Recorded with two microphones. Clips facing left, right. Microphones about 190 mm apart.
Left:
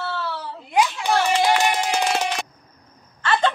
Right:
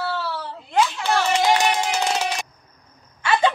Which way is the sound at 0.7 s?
15° left (ahead or behind).